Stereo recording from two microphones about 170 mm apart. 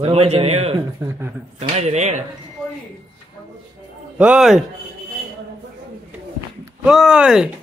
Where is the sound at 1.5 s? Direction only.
40° right (ahead or behind).